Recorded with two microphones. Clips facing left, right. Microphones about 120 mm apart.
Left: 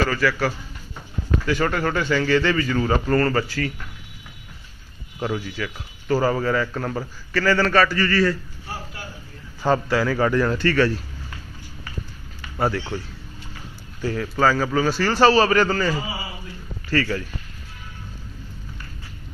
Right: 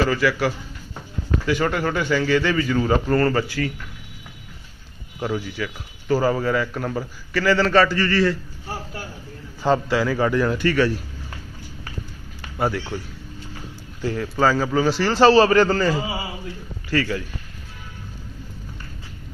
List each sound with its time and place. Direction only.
0.0 s speech: 15° right (ahead or behind)
5.2 s speech: 15° right (ahead or behind)
9.6 s speech: 15° right (ahead or behind)
12.5 s speech: 15° right (ahead or behind)
14.0 s a man's voice: 20° right (ahead or behind)
16.9 s speech: 15° right (ahead or behind)